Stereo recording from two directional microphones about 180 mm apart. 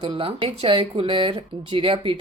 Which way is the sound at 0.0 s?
30° right (ahead or behind).